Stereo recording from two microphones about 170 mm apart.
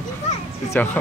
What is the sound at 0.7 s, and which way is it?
Speech, 10° left (ahead or behind).